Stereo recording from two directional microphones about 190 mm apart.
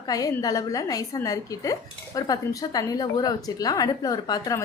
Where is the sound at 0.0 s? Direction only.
20° left (ahead or behind).